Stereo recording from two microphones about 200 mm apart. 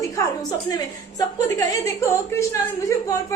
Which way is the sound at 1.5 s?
15° left (ahead or behind).